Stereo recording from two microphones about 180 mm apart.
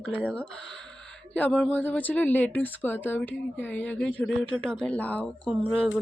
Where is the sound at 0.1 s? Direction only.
5° left (ahead or behind).